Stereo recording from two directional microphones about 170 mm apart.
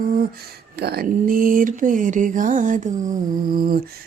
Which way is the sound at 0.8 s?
65° right (ahead or behind).